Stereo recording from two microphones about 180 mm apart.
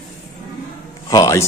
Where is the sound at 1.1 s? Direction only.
20° left (ahead or behind).